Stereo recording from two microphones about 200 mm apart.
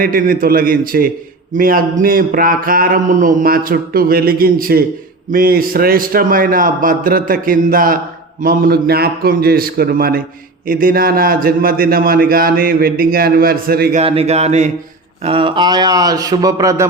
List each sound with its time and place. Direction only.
0.0 s speech: 45° right (ahead or behind)
13.9 s speech: 30° right (ahead or behind)